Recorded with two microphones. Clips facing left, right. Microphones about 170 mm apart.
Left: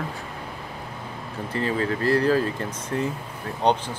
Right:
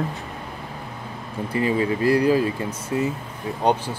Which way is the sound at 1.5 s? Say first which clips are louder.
Right 3 dB; 15° right (ahead or behind).